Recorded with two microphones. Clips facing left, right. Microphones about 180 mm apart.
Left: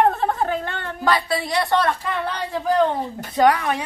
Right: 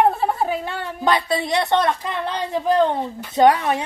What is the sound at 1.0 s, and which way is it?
Speech, 20° right (ahead or behind).